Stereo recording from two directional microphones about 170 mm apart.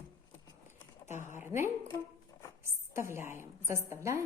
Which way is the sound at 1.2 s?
15° right (ahead or behind).